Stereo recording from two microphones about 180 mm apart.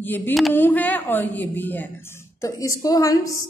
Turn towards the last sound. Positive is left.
turn(degrees=20)  # may be behind; listen again after turning